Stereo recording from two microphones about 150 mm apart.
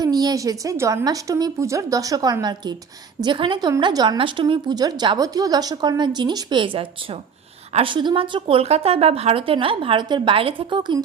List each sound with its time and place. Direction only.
0.0 s a woman's voice: 25° right (ahead or behind)